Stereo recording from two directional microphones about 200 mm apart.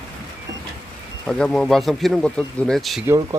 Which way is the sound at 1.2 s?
5° left (ahead or behind).